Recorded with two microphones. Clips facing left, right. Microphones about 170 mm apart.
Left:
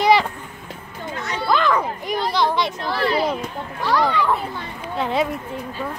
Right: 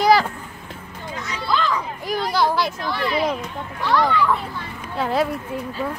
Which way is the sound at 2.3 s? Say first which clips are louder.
Right 1 dB; 5° right (ahead or behind).